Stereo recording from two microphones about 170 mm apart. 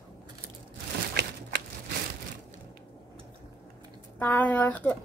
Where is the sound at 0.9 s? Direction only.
75° right (ahead or behind).